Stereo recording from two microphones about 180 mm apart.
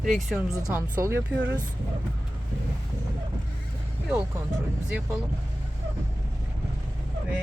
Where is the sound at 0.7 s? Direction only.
10° right (ahead or behind).